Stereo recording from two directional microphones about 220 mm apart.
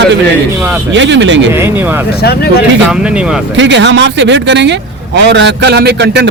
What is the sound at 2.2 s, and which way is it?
Speech, 45° left (ahead or behind).